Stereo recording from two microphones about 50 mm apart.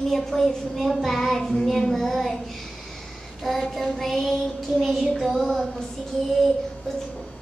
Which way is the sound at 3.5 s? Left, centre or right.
Centre.